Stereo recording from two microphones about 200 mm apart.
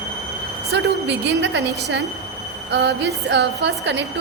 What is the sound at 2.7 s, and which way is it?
A woman's voice, 55° right (ahead or behind).